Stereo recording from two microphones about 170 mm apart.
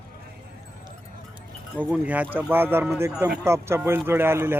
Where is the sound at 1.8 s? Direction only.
10° right (ahead or behind).